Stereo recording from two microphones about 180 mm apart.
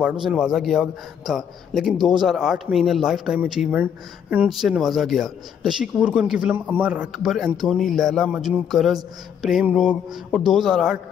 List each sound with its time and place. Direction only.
0.0 s a man's voice: 5° right (ahead or behind)